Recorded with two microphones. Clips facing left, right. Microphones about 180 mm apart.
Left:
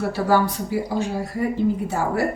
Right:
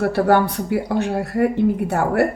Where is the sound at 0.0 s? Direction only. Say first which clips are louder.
Right 4 dB; 60° right (ahead or behind).